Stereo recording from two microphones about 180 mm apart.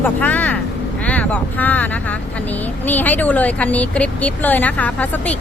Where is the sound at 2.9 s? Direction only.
10° left (ahead or behind).